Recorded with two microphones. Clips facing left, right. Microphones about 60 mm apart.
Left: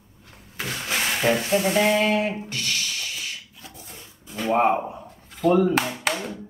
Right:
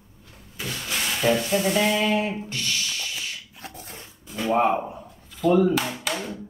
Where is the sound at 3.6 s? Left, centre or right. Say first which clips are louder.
Right 3 dB; right.